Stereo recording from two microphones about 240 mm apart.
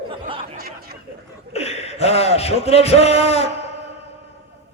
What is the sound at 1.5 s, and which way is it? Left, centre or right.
A man's voice, left.